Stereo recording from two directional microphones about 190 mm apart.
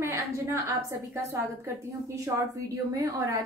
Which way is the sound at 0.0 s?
15° right (ahead or behind).